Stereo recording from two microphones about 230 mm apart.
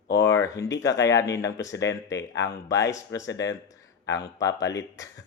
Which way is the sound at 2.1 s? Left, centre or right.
Left.